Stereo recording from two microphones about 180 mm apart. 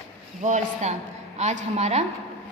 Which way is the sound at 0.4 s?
40° right (ahead or behind).